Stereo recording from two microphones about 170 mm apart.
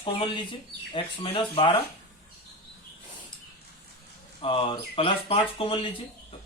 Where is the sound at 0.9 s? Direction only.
30° left (ahead or behind).